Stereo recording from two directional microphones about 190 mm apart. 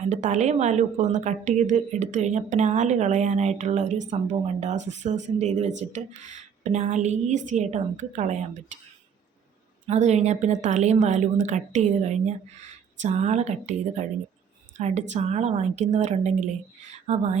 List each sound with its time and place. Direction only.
0.0 s speech: 40° right (ahead or behind)
9.8 s a woman's voice: 35° right (ahead or behind)